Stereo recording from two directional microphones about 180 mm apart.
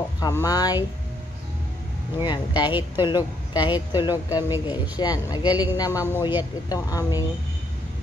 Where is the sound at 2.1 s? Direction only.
25° left (ahead or behind).